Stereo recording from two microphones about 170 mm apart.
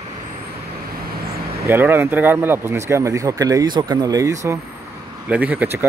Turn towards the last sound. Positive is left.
turn(degrees=-10)  # may be behind; listen again after turning